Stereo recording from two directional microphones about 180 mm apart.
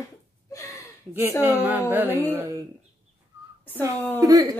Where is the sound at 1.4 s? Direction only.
10° right (ahead or behind).